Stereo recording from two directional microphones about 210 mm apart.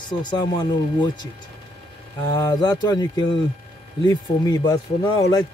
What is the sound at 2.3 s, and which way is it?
Speech, 20° left (ahead or behind).